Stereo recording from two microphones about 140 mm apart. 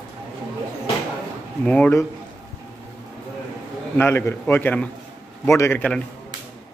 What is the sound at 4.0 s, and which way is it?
A man's voice, 15° left (ahead or behind).